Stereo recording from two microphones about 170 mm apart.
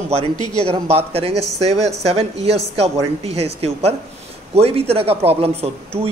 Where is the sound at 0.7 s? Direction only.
35° right (ahead or behind).